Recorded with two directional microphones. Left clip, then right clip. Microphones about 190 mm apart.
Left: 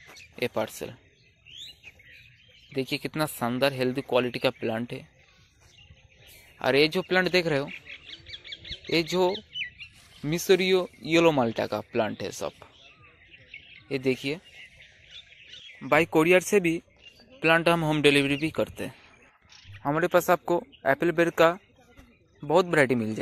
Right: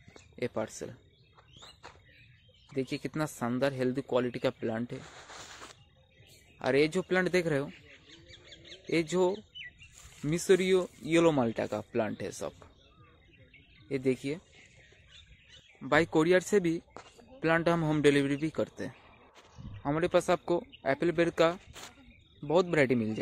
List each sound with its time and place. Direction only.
0.4 s speech: 10° left (ahead or behind)
2.7 s speech: 10° left (ahead or behind)
6.6 s speech: 10° left (ahead or behind)
8.9 s speech: 5° left (ahead or behind)
13.8 s speech: 10° left (ahead or behind)
15.8 s speech: 20° left (ahead or behind)